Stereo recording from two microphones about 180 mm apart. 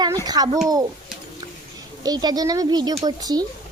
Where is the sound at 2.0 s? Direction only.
20° right (ahead or behind).